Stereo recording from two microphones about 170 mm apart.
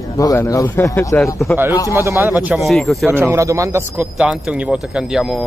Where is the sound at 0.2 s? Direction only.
20° left (ahead or behind).